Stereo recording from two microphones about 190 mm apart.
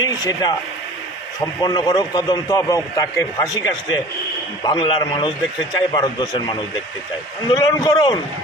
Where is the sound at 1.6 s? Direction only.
20° left (ahead or behind).